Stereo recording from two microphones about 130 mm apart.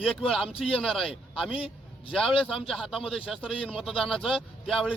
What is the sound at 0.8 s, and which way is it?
Speech, 5° left (ahead or behind).